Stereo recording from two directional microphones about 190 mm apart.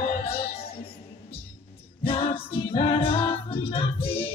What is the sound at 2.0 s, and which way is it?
A capella, 30° left (ahead or behind).